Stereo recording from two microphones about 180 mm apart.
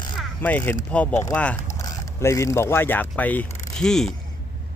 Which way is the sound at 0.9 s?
10° left (ahead or behind).